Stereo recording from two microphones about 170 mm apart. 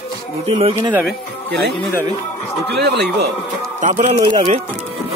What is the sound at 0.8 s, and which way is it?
Speech, 10° right (ahead or behind).